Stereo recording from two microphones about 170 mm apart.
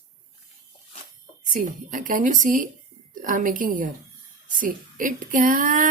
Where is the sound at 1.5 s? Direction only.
50° right (ahead or behind).